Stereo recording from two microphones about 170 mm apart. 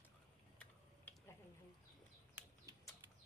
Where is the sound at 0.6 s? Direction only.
10° left (ahead or behind).